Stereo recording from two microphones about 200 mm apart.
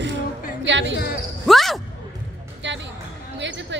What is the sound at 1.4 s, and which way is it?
Basketball bounce, centre (ahead or behind).